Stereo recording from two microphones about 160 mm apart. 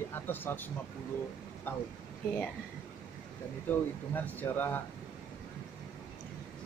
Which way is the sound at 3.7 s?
10° left (ahead or behind).